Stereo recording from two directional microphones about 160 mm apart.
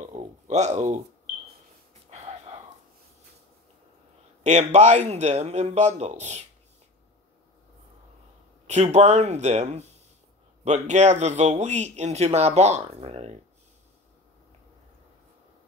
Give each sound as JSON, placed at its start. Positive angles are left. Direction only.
{"t": 0.1, "sound": "a sound", "side_deg": -45}
{"t": 2.0, "sound": "gasp", "side_deg": -45}
{"t": 4.4, "sound": "speech", "side_deg": -45}
{"t": 8.6, "sound": "speech", "side_deg": -45}